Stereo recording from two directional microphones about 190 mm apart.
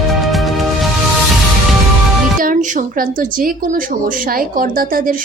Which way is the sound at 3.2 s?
45° right (ahead or behind).